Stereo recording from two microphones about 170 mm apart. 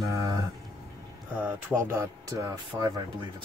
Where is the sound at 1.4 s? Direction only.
15° right (ahead or behind).